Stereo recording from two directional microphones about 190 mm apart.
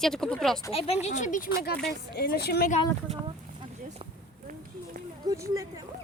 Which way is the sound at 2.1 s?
55° left (ahead or behind).